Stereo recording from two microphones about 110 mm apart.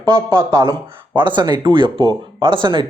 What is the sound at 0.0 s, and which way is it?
Speech, 45° right (ahead or behind).